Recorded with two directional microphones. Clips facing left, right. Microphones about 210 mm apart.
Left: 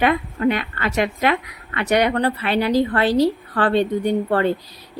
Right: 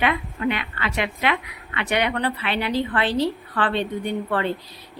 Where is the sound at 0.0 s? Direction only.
45° left (ahead or behind).